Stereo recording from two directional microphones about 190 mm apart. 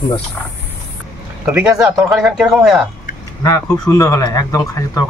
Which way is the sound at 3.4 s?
20° left (ahead or behind).